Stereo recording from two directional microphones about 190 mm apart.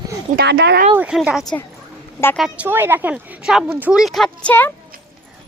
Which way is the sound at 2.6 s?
10° right (ahead or behind).